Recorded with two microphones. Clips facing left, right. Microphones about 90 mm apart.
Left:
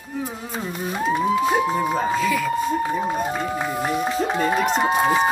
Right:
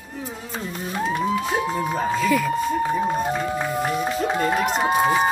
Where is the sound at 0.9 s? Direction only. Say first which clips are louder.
Left 2 dB; 10° left (ahead or behind).